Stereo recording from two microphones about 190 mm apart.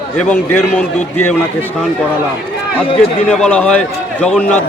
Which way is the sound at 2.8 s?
30° left (ahead or behind).